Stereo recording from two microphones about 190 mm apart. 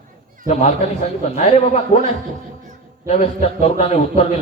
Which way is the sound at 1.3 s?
35° left (ahead or behind).